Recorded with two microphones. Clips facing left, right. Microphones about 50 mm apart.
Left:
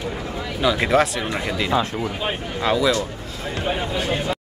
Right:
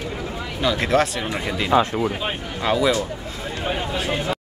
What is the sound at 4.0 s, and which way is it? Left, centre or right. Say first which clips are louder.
Speech: left 1 dB; centre.